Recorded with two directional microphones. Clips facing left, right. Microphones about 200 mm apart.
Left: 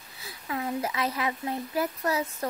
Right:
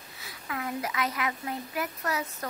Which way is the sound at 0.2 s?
30° left (ahead or behind).